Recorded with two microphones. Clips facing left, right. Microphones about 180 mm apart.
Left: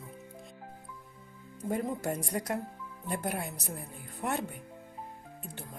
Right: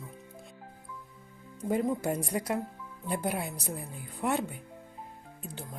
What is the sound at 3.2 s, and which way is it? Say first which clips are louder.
Speech: right 2 dB; centre (ahead or behind).